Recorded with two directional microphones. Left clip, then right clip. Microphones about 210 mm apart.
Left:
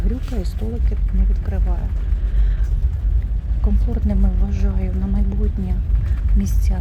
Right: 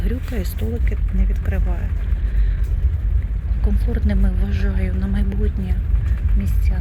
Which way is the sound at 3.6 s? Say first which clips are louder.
Even; 10° left (ahead or behind).